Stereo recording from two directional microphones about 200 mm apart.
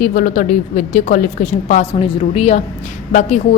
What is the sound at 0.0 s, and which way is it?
A woman's voice, 40° left (ahead or behind).